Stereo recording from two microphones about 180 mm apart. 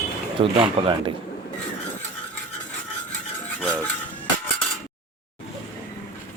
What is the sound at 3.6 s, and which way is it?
Cutlery, 5° left (ahead or behind).